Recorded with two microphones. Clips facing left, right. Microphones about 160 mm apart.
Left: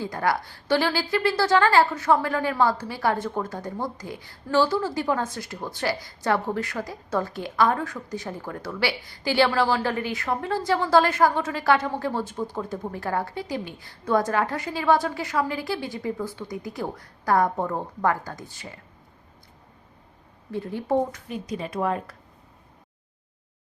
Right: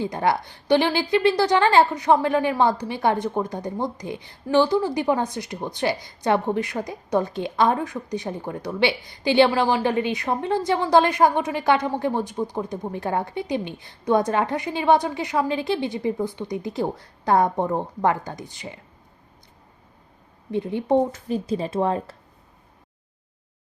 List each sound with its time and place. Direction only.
0.0 s a woman's voice: 20° right (ahead or behind)
20.5 s a woman's voice: 20° right (ahead or behind)
21.2 s a woman's voice: 35° right (ahead or behind)